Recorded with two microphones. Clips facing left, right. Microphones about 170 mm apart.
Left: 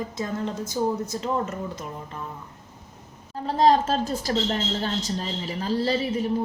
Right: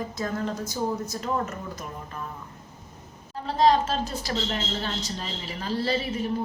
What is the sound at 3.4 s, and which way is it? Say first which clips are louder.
A woman's voice: left 2 dB; 45° left (ahead or behind).